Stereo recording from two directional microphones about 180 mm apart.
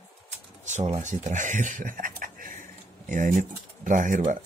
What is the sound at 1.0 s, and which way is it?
Speech, 45° right (ahead or behind).